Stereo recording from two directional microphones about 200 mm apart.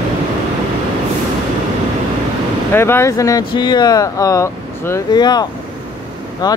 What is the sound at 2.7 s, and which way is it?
Speech, 10° left (ahead or behind).